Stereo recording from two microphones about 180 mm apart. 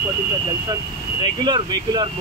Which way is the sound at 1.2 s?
25° right (ahead or behind).